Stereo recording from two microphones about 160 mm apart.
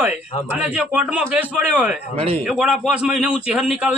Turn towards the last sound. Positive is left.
turn(degrees=-5)  # may be behind; listen again after turning